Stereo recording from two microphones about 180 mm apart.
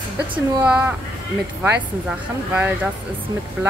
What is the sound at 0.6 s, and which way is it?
Speech, 5° right (ahead or behind).